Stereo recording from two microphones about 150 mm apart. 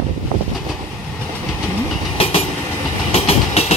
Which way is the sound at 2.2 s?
40° left (ahead or behind).